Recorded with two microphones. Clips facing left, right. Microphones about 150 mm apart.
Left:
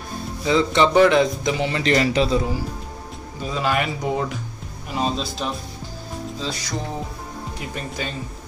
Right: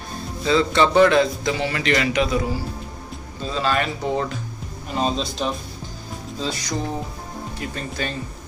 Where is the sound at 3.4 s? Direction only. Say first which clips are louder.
Even; 15° left (ahead or behind).